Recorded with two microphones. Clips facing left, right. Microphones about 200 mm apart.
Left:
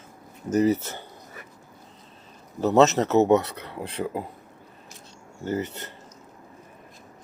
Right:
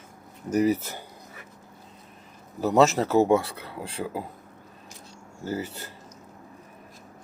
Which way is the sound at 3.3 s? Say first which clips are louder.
Left 2 dB; 25° left (ahead or behind).